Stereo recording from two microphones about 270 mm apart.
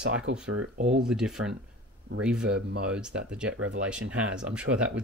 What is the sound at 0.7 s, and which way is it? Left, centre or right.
Speech, right.